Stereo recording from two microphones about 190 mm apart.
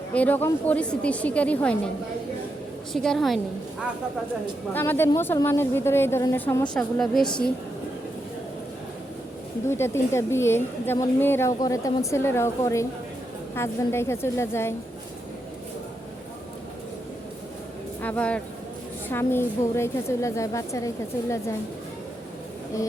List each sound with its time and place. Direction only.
0.1 s a woman's voice: 10° left (ahead or behind)
2.9 s a woman's voice: centre (ahead or behind)
4.7 s a woman's voice: 10° left (ahead or behind)
9.6 s a woman's voice: 15° left (ahead or behind)
18.0 s a woman's voice: 5° left (ahead or behind)